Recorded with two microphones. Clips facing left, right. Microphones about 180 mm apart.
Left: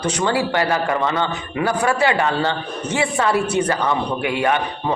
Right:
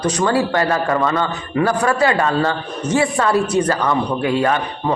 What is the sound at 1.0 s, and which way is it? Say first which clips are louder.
A man's voice: right 2 dB; 25° left (ahead or behind).